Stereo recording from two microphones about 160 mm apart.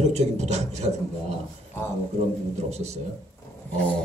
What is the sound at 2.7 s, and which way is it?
Speech, 45° right (ahead or behind).